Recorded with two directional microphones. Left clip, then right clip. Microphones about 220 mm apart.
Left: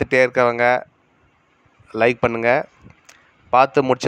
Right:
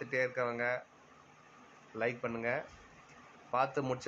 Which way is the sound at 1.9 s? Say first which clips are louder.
Left 19 dB; 50° left (ahead or behind).